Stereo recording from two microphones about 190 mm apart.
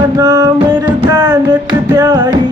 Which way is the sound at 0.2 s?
15° right (ahead or behind).